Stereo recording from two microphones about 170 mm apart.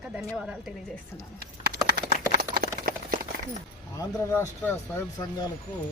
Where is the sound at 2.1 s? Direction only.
60° right (ahead or behind).